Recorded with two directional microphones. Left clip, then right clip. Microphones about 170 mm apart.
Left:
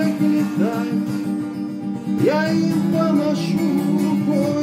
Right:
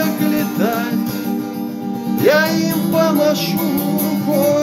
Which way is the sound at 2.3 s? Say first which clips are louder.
Right 6 dB; 15° left (ahead or behind).